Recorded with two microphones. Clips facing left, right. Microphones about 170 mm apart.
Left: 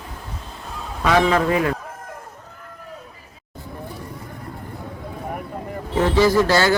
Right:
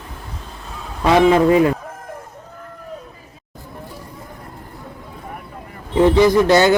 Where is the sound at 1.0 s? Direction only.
25° right (ahead or behind).